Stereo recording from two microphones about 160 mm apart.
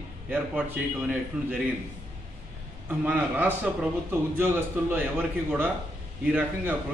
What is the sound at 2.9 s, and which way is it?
A man's voice, 10° right (ahead or behind).